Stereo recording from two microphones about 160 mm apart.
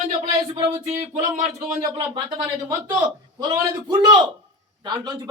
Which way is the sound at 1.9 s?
25° right (ahead or behind).